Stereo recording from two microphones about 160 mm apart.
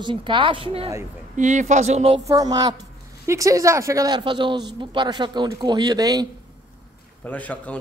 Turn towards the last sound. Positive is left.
turn(degrees=10)  # may be behind; listen again after turning